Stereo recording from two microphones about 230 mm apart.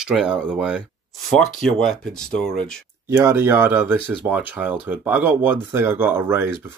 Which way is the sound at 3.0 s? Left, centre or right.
Centre.